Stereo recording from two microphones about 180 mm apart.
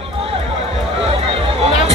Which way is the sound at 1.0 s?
35° right (ahead or behind).